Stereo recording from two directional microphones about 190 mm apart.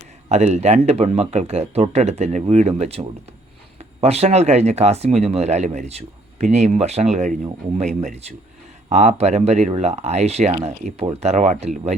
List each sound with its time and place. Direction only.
0.3 s speech: 35° right (ahead or behind)